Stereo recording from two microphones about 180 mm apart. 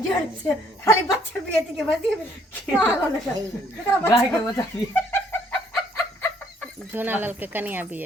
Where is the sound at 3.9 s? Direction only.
15° left (ahead or behind).